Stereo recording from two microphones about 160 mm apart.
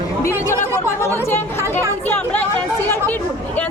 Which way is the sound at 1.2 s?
15° left (ahead or behind).